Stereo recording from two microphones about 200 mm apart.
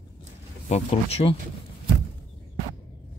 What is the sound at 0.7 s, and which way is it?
Speech, 30° left (ahead or behind).